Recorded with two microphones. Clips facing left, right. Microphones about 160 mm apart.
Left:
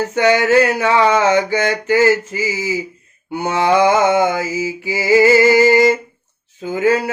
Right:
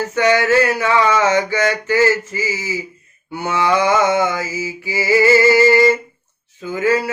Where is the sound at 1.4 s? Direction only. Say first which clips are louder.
Left 1 dB; 15° left (ahead or behind).